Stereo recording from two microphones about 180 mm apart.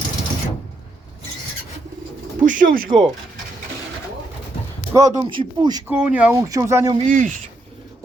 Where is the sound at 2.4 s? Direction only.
45° right (ahead or behind).